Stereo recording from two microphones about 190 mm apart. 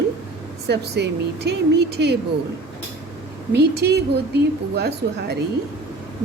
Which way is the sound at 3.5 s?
60° right (ahead or behind).